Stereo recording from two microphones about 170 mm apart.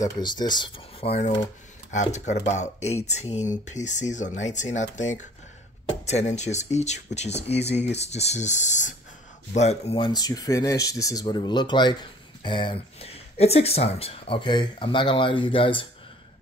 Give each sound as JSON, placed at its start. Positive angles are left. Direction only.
{"t": 0.0, "sound": "speech", "side_deg": 25}